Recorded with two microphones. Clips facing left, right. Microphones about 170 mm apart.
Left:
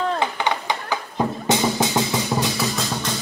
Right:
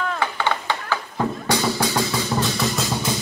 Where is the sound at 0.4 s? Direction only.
15° left (ahead or behind).